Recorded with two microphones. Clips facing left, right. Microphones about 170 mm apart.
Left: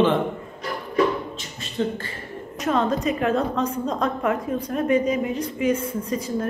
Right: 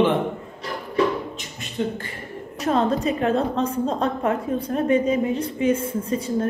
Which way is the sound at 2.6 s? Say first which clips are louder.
Right 1 dB; 35° right (ahead or behind).